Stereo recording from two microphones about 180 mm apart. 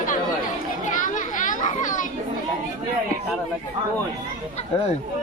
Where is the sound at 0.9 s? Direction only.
45° left (ahead or behind).